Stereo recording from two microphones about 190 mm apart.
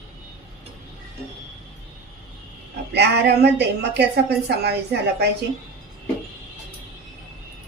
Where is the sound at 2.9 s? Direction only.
60° right (ahead or behind).